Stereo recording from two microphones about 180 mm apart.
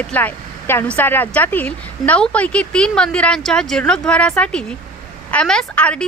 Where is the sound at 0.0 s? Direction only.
10° left (ahead or behind).